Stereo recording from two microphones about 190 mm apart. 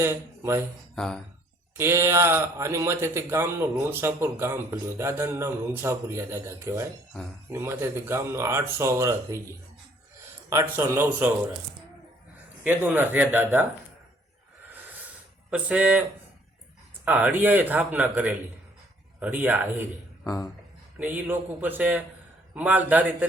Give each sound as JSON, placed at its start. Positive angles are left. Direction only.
{"t": 0.0, "sound": "speech", "side_deg": -15}
{"t": 0.9, "sound": "speech", "side_deg": 5}
{"t": 1.8, "sound": "speech", "side_deg": -15}
{"t": 10.5, "sound": "speech", "side_deg": -15}
{"t": 12.6, "sound": "speech", "side_deg": -10}
{"t": 15.4, "sound": "speech", "side_deg": -5}
{"t": 17.1, "sound": "speech", "side_deg": -10}
{"t": 20.2, "sound": "speech", "side_deg": 15}
{"t": 21.0, "sound": "speech", "side_deg": -10}